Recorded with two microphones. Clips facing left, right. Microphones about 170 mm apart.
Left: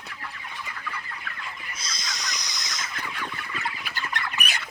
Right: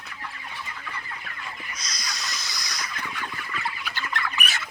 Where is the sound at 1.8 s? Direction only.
25° left (ahead or behind).